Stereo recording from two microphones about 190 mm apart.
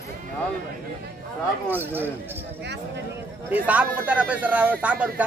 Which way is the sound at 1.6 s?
10° right (ahead or behind).